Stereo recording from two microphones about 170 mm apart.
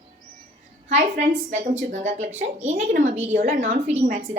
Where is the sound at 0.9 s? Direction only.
45° right (ahead or behind).